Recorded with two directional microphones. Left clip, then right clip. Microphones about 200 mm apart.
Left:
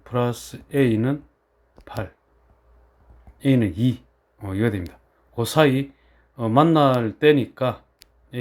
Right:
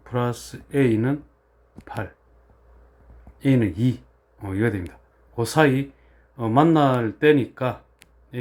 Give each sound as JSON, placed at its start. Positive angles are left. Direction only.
{"t": 0.0, "sound": "speech", "side_deg": 20}
{"t": 3.3, "sound": "speech", "side_deg": 15}
{"t": 4.9, "sound": "a sound", "side_deg": 20}
{"t": 6.3, "sound": "speech", "side_deg": 20}